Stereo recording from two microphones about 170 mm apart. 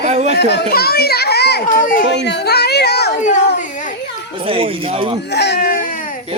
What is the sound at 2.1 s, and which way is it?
A child's voice, 85° left.